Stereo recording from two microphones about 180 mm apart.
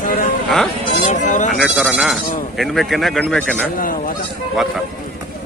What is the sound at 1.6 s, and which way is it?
Speech, centre (ahead or behind).